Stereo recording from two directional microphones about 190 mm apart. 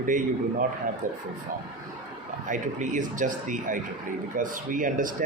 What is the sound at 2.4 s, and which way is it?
A man's voice, 40° right (ahead or behind).